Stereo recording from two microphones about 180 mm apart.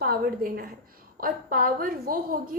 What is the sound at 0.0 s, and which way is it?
A woman's voice, 60° right (ahead or behind).